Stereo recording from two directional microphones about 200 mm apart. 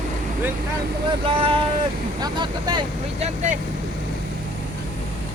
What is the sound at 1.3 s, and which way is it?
Speech, 25° right (ahead or behind).